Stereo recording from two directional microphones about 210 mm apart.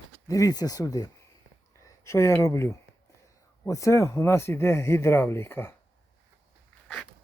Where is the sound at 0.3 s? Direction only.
15° left (ahead or behind).